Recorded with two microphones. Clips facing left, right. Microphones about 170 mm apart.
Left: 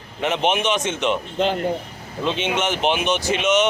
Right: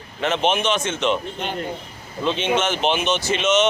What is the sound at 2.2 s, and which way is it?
A man's voice, 15° left (ahead or behind).